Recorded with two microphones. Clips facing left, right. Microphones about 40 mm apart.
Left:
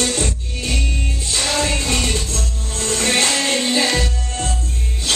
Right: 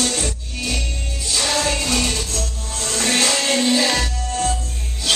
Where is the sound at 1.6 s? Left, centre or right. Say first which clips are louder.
Even; left.